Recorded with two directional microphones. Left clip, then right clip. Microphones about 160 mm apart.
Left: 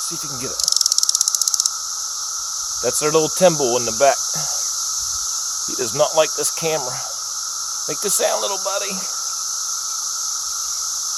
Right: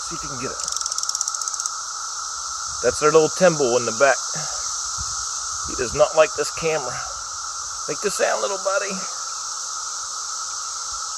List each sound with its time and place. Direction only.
2.8 s speech: 25° left (ahead or behind)
5.8 s speech: 30° left (ahead or behind)
8.0 s speech: 20° left (ahead or behind)